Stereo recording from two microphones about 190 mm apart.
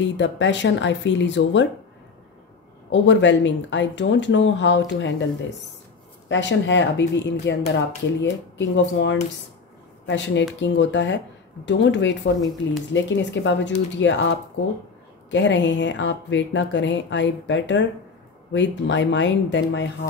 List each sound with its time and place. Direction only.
0.0 s speech: 70° left (ahead or behind)
2.9 s speech: 70° left (ahead or behind)
6.2 s speech: 70° left (ahead or behind)
15.3 s speech: 70° left (ahead or behind)